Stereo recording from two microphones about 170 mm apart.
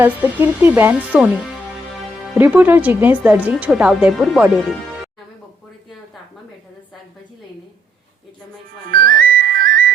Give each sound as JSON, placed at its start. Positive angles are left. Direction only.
{"t": 0.0, "sound": "a woman's voice", "side_deg": -10}
{"t": 2.4, "sound": "a woman's voice", "side_deg": -10}
{"t": 8.9, "sound": "music", "side_deg": -55}